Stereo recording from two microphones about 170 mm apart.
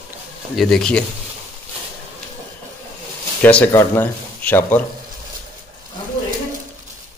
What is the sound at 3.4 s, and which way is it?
Speech, 10° left (ahead or behind).